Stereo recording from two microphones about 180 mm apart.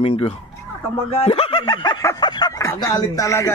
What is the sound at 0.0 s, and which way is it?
A man's voice, 30° left (ahead or behind).